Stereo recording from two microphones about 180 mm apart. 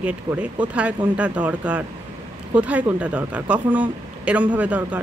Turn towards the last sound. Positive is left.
turn(degrees=-10)  # may be behind; listen again after turning